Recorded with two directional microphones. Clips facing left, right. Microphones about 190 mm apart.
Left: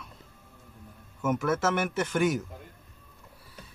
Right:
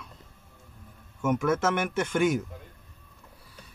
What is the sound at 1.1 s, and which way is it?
Speech, 5° left (ahead or behind).